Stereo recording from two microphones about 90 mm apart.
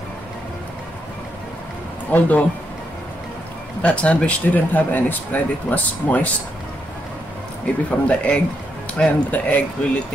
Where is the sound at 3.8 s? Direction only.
15° left (ahead or behind).